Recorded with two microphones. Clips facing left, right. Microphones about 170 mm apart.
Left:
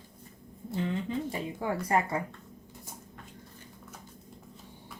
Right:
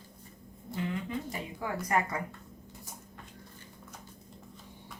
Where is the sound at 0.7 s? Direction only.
30° left (ahead or behind).